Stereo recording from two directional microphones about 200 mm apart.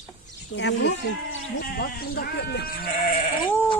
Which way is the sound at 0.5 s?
60° left (ahead or behind).